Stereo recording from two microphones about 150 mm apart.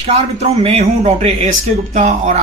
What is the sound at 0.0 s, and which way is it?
A man's voice, 45° right (ahead or behind).